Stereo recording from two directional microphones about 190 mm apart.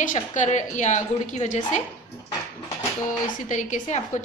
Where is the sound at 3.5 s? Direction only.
40° left (ahead or behind).